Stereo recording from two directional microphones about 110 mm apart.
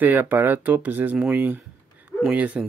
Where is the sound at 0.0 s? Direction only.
15° right (ahead or behind).